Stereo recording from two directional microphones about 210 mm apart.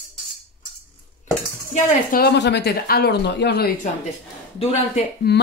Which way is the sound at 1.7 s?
45° left (ahead or behind).